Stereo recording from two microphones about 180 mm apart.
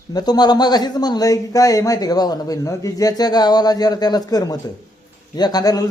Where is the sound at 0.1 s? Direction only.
20° left (ahead or behind).